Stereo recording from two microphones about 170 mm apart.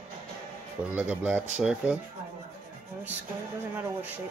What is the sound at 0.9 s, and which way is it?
A man's voice, 10° right (ahead or behind).